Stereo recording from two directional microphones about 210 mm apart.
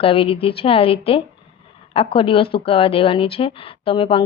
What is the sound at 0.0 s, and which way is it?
Speech, 25° left (ahead or behind).